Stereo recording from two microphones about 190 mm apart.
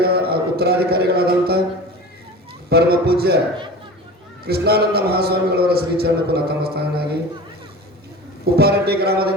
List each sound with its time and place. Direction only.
0.0 s a man's voice: 55° right (ahead or behind)
2.6 s a man's voice: 55° right (ahead or behind)
4.4 s a man's voice: 55° right (ahead or behind)
8.5 s a man's voice: 55° right (ahead or behind)